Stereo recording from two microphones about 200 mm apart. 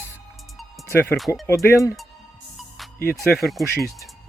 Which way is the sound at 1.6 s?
15° left (ahead or behind).